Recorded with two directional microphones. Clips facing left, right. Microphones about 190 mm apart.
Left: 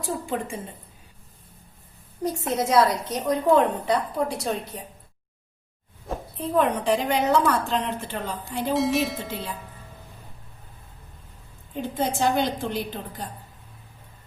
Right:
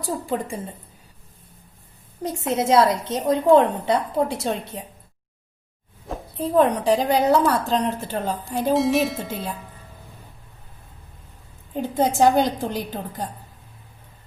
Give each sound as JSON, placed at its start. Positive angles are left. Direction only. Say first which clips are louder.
{"t": 0.0, "sound": "a woman's voice", "louder": "right 2 dB", "side_deg": -35}
{"t": 2.2, "sound": "a woman's voice", "louder": "right 2 dB", "side_deg": -25}
{"t": 6.1, "sound": "a sound", "louder": "even", "side_deg": 0}
{"t": 6.4, "sound": "a woman's voice", "louder": "right 4 dB", "side_deg": -35}
{"t": 8.7, "sound": "speech", "louder": "right 3 dB", "side_deg": 0}
{"t": 11.8, "sound": "a woman's voice", "louder": "right 6 dB", "side_deg": -40}